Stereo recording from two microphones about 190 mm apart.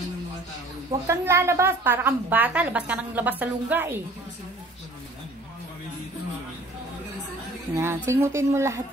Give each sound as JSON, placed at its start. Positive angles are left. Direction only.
{"t": 1.0, "sound": "a woman's voice", "side_deg": -15}
{"t": 7.7, "sound": "a woman's voice", "side_deg": -10}